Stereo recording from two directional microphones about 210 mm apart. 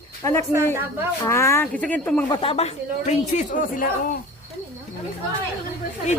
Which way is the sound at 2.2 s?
25° left (ahead or behind).